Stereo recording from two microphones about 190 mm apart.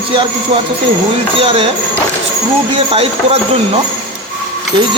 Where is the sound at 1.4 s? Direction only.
30° right (ahead or behind).